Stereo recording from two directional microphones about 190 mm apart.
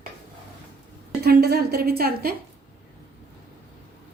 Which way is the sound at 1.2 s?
55° right (ahead or behind).